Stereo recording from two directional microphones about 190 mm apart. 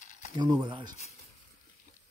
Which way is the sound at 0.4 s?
25° right (ahead or behind).